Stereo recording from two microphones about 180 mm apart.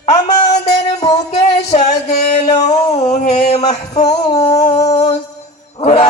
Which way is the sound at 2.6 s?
40° left (ahead or behind).